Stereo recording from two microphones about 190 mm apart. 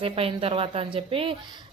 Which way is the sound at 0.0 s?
30° right (ahead or behind).